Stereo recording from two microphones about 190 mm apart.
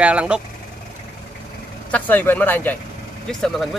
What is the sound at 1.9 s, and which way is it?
Speech, 10° left (ahead or behind).